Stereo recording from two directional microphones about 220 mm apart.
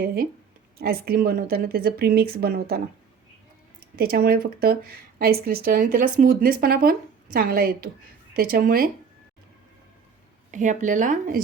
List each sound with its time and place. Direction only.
0.0 s speech: 45° right (ahead or behind)
10.5 s speech: 35° right (ahead or behind)